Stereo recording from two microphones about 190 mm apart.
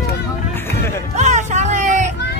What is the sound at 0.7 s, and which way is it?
Music, 15° left (ahead or behind).